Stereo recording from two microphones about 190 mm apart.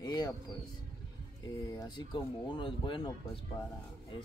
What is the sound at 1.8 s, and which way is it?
Speech, 25° left (ahead or behind).